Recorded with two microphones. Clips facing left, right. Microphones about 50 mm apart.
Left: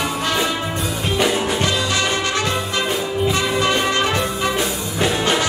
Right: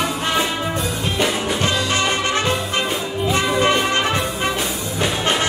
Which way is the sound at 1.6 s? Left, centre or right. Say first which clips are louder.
Even; right.